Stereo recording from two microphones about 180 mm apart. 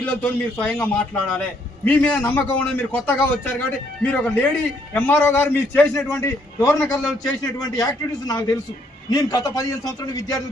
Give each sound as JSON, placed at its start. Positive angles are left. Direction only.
{"t": 0.0, "sound": "a man's voice", "side_deg": 10}